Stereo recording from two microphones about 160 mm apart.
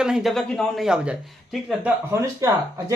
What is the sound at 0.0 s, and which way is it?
Speech, 5° right (ahead or behind).